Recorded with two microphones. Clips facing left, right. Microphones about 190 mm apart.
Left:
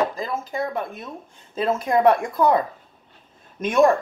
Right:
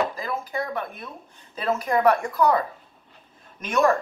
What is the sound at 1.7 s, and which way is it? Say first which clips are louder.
Speech: left 2 dB; 25° left (ahead or behind).